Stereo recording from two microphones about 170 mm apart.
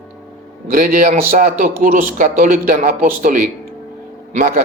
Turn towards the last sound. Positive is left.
turn(degrees=-55)  # may be behind; listen again after turning